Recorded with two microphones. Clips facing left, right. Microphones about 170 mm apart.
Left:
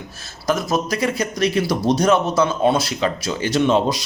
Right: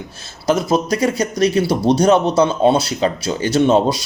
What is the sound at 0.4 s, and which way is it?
Speech, 30° right (ahead or behind).